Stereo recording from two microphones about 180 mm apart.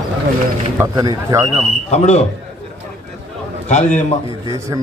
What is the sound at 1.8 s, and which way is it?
Speech, 40° left (ahead or behind).